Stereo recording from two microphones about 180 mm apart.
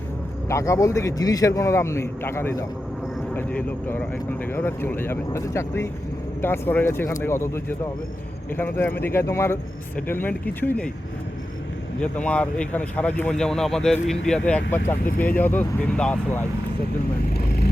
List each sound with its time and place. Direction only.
0.4 s speech: 15° left (ahead or behind)
11.9 s speech: 5° left (ahead or behind)
17.3 s vehicle: 55° left (ahead or behind)